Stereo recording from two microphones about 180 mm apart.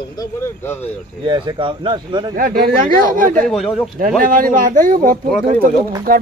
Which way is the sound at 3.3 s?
5° left (ahead or behind).